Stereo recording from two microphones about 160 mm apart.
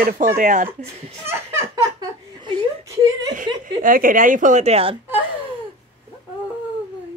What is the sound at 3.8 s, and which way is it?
Speech, 60° right (ahead or behind).